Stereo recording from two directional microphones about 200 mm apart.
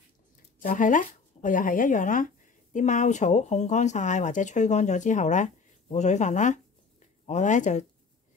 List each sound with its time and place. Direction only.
0.6 s speech: 40° left (ahead or behind)